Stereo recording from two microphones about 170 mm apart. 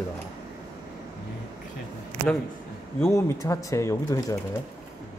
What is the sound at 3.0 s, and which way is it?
Speech, 15° left (ahead or behind).